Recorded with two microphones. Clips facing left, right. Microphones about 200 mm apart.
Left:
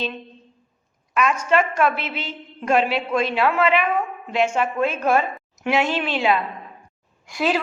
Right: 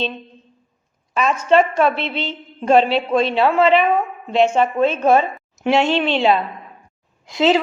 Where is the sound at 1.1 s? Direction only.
30° right (ahead or behind).